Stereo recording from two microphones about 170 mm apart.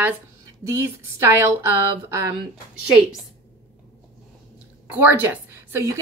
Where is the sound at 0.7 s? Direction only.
15° right (ahead or behind).